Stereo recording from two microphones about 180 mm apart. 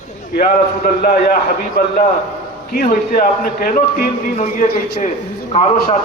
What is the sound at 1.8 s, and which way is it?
A man's voice, 60° left (ahead or behind).